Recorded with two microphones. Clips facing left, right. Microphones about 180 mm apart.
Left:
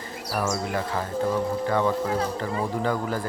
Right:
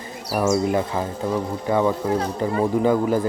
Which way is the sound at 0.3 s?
15° right (ahead or behind).